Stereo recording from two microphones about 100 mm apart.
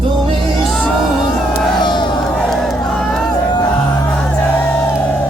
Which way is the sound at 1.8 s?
50° left (ahead or behind).